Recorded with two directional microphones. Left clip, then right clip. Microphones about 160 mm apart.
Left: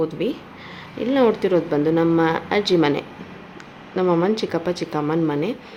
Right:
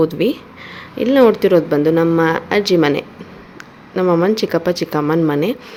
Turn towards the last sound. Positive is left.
turn(degrees=-25)  # may be behind; listen again after turning